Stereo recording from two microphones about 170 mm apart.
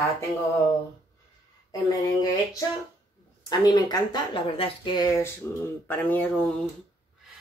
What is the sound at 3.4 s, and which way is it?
Speech, 25° left (ahead or behind).